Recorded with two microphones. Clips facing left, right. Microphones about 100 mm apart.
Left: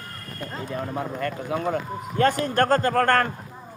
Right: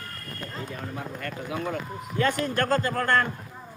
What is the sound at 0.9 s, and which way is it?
Speech, 40° left (ahead or behind).